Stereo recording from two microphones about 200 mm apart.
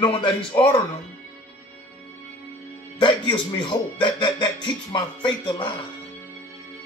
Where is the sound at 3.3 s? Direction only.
25° left (ahead or behind).